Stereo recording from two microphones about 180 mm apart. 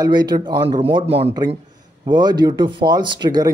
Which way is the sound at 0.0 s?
20° right (ahead or behind).